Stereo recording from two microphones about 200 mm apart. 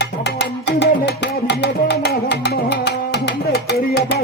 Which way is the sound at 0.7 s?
60° left (ahead or behind).